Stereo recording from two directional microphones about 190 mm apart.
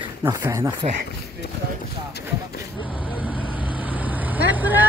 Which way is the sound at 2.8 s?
5° right (ahead or behind).